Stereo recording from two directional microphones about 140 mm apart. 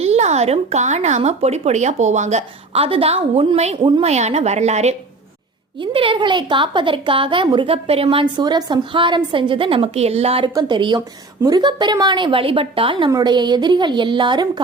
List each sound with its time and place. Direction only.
0.0 s speech: 50° right (ahead or behind)
3.8 s a woman's voice: 30° right (ahead or behind)
4.0 s speech: 50° right (ahead or behind)
5.8 s a woman's voice: 40° right (ahead or behind)
10.5 s a woman's voice: 30° right (ahead or behind)